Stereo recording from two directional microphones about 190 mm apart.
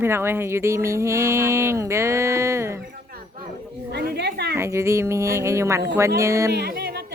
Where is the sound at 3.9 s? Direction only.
60° right (ahead or behind).